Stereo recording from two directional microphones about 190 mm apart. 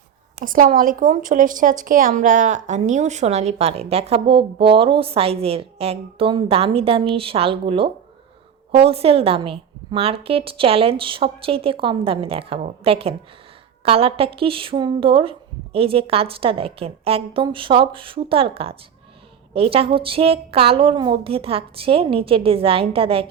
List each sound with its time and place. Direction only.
0.4 s speech: 45° right (ahead or behind); by 23.2 s 30° right (ahead or behind)